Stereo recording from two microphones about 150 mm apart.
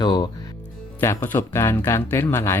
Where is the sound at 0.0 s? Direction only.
30° left (ahead or behind).